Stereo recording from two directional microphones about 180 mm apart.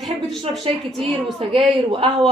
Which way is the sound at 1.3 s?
30° right (ahead or behind).